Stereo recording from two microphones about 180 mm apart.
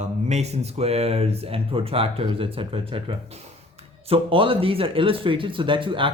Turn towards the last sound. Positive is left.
turn(degrees=-30)  # may be behind; listen again after turning